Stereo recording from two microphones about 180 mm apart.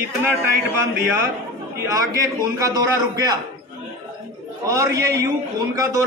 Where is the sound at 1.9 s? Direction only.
20° right (ahead or behind).